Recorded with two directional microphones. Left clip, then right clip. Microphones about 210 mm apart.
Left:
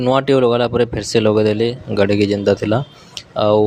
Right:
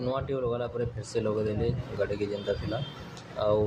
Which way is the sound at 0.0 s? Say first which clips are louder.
Left 17 dB; 50° left (ahead or behind).